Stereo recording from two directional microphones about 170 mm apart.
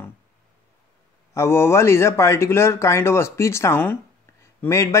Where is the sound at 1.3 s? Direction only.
15° left (ahead or behind).